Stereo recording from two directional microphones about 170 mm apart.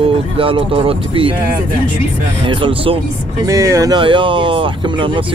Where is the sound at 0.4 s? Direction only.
30° right (ahead or behind).